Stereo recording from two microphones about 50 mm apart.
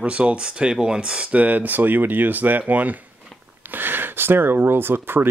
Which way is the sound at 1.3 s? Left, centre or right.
Right.